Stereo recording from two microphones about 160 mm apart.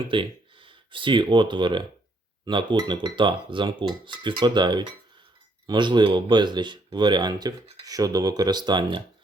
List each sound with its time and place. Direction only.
0.1 s speech: 30° right (ahead or behind)